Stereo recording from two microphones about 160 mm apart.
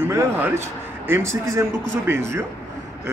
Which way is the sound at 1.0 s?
15° right (ahead or behind).